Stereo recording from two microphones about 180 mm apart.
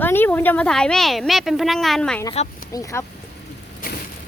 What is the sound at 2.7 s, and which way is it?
Speech, 20° left (ahead or behind).